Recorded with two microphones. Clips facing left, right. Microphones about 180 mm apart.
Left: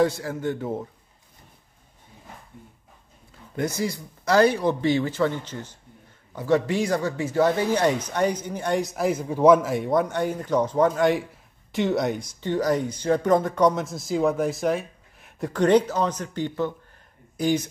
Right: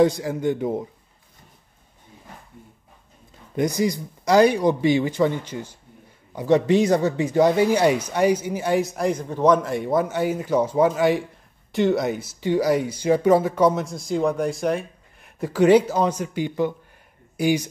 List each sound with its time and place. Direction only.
0.0 s speech: 15° right (ahead or behind)
3.5 s a man's voice: 15° right (ahead or behind)